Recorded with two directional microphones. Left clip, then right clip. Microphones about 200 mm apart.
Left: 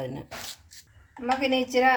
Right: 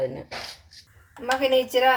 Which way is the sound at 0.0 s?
45° left (ahead or behind).